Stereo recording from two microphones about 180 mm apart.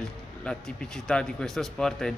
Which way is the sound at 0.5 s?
5° left (ahead or behind).